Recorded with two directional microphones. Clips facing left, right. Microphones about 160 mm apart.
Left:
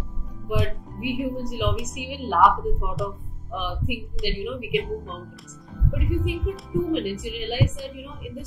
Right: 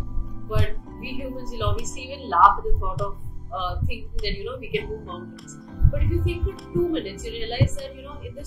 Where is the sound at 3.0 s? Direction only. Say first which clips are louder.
Left 1 dB; centre (ahead or behind).